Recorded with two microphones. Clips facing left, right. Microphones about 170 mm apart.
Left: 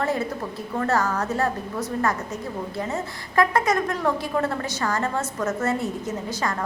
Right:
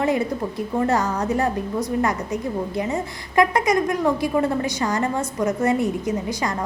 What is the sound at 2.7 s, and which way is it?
A woman's voice, 15° right (ahead or behind).